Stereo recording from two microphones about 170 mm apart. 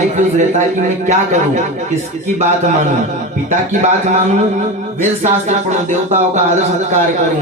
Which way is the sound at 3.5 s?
45° right (ahead or behind).